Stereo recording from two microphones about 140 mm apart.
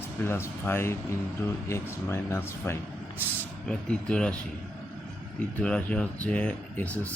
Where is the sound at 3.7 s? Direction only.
5° left (ahead or behind).